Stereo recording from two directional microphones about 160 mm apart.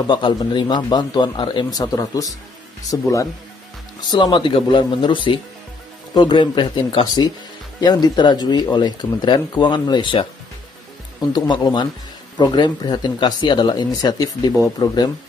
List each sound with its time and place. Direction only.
0.1 s speech: 30° left (ahead or behind)
11.3 s speech: 25° left (ahead or behind)